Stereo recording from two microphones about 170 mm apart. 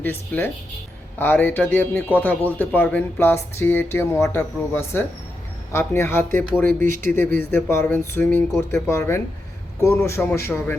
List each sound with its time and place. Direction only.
0.0 s a man's voice: 10° left (ahead or behind)